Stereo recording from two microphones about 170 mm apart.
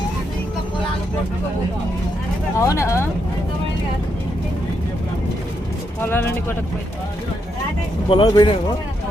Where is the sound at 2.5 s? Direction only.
15° left (ahead or behind).